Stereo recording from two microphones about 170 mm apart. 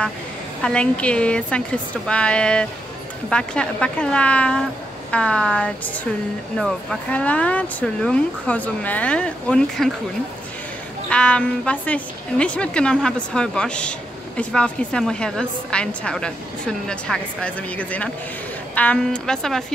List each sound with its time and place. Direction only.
0.6 s a woman's voice: 5° left (ahead or behind)
11.1 s a woman's voice: 5° left (ahead or behind)